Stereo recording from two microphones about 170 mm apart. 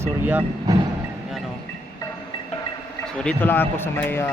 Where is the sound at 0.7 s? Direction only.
20° right (ahead or behind).